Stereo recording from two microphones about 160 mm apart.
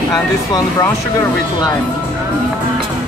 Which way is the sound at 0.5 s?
20° left (ahead or behind).